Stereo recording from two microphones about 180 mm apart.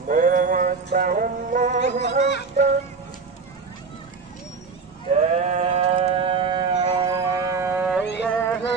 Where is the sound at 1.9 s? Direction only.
40° right (ahead or behind).